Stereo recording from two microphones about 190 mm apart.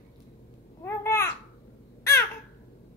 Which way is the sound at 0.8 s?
15° left (ahead or behind).